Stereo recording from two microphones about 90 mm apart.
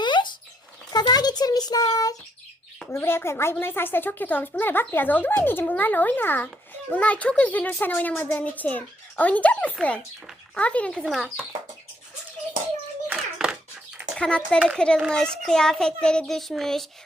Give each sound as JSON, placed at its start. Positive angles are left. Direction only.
{"t": 0.0, "sound": "a sound", "side_deg": 60}
{"t": 2.9, "sound": "a child's voice", "side_deg": 25}
{"t": 11.0, "sound": "a child's voice", "side_deg": 0}
{"t": 13.1, "sound": "hands", "side_deg": -5}
{"t": 14.2, "sound": "a child's voice", "side_deg": 10}